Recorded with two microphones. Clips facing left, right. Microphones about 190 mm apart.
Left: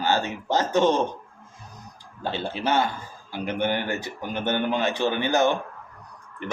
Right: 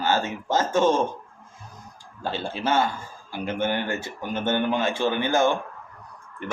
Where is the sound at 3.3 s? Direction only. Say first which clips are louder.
Even; 20° left (ahead or behind).